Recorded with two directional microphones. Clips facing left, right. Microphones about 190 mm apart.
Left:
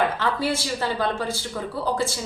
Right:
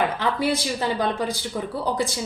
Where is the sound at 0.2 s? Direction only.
15° right (ahead or behind).